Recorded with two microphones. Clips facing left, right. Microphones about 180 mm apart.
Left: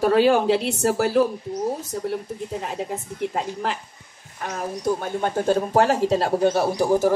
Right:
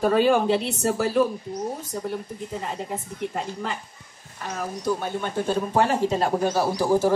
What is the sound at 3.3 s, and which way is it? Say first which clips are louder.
Speech: left 3 dB; 75° left (ahead or behind).